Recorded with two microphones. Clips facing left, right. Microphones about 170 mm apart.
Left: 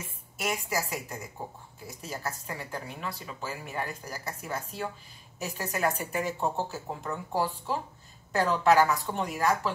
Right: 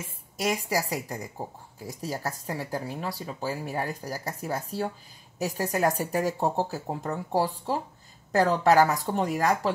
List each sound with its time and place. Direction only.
0.5 s speech: 40° right (ahead or behind)